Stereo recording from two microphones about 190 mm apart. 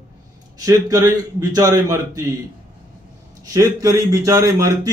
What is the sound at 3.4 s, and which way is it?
A man's voice, 20° right (ahead or behind).